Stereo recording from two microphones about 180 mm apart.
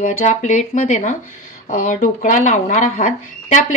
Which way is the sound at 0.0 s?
40° left (ahead or behind).